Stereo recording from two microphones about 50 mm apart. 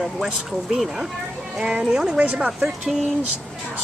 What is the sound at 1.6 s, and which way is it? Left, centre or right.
Speech, right.